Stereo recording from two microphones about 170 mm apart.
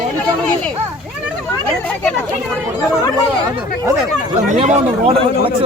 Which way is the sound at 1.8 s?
10° left (ahead or behind).